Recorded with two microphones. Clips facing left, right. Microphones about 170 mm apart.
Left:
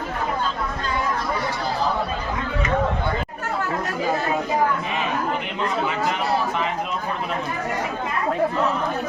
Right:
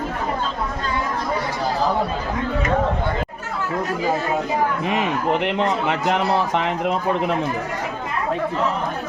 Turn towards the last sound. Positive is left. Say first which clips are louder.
# right 7 dB
turn(degrees=-75)  # may be behind; listen again after turning